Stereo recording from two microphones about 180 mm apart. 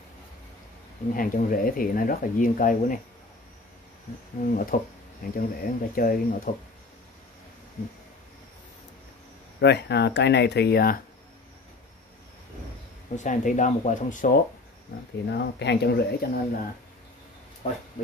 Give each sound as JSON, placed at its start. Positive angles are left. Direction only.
{"t": 1.1, "sound": "speech", "side_deg": 50}
{"t": 4.5, "sound": "speech", "side_deg": 50}
{"t": 9.6, "sound": "speech", "side_deg": 70}
{"t": 13.1, "sound": "speech", "side_deg": 45}
{"t": 15.2, "sound": "speech", "side_deg": 70}
{"t": 18.0, "sound": "speech", "side_deg": 45}